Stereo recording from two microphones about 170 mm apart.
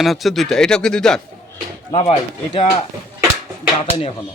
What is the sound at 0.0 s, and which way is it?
Speech, centre (ahead or behind).